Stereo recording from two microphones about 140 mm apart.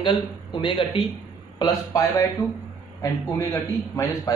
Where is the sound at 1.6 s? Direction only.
25° left (ahead or behind).